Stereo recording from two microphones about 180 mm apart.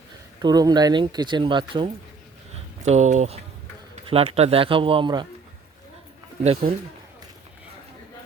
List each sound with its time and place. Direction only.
0.4 s speech: 20° right (ahead or behind)
2.8 s speech: 40° right (ahead or behind)
6.4 s speech: 35° right (ahead or behind)